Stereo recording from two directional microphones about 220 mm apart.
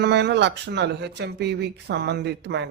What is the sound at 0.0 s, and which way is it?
Speech, 50° right (ahead or behind).